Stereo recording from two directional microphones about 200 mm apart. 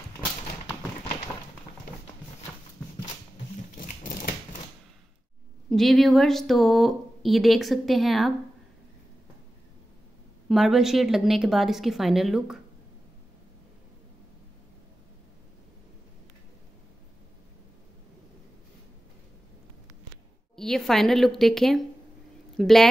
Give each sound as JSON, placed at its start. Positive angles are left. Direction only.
{"t": 3.7, "sound": "a sound", "side_deg": 40}
{"t": 5.7, "sound": "speech", "side_deg": 0}
{"t": 10.5, "sound": "speech", "side_deg": 0}
{"t": 20.5, "sound": "speech", "side_deg": 0}